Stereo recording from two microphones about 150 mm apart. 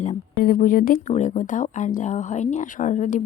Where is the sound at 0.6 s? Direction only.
75° left (ahead or behind).